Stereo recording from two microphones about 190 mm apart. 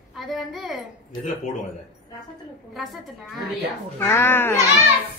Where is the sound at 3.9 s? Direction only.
15° left (ahead or behind).